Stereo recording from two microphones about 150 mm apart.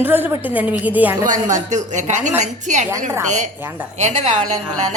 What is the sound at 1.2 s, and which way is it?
A woman's voice, 55° right (ahead or behind).